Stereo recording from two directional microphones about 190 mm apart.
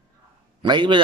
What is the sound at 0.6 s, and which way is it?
Speech, 25° right (ahead or behind).